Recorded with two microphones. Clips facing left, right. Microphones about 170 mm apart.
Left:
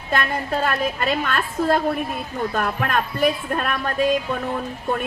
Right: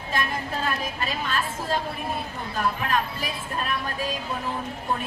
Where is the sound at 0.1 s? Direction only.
60° left (ahead or behind).